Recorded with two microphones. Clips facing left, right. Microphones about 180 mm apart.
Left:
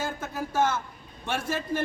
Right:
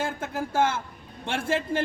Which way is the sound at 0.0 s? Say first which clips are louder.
Right 2 dB; 30° right (ahead or behind).